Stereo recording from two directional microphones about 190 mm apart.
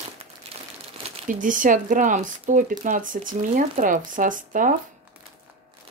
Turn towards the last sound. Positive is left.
turn(degrees=-45)  # may be behind; listen again after turning